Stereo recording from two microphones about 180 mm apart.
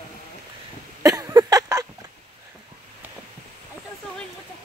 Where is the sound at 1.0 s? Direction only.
20° right (ahead or behind).